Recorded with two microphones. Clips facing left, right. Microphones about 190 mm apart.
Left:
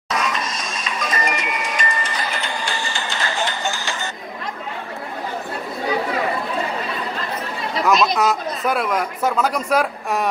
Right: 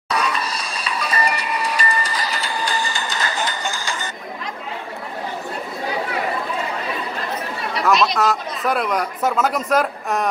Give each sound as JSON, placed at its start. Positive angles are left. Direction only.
{"t": 0.1, "sound": "music", "side_deg": -35}
{"t": 7.8, "sound": "speech", "side_deg": 0}